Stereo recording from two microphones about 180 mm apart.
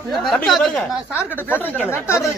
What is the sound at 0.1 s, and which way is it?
Speech, centre (ahead or behind).